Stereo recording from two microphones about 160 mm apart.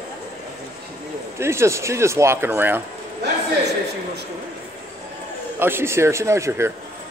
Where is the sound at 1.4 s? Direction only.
15° right (ahead or behind).